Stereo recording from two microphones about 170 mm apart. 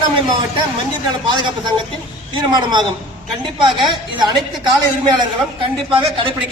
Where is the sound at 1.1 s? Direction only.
25° right (ahead or behind).